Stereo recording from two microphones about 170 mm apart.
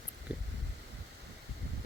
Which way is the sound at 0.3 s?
10° right (ahead or behind).